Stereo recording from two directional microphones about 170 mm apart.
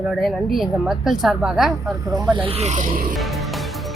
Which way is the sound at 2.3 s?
35° right (ahead or behind).